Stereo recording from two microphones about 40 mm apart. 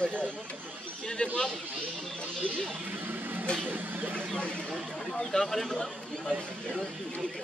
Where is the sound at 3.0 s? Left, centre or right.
Right.